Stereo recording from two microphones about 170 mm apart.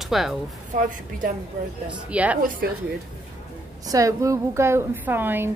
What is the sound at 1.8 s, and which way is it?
Speech, 10° right (ahead or behind).